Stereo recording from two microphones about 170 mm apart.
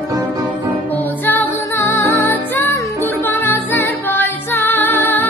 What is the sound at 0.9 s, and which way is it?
Music, 10° left (ahead or behind).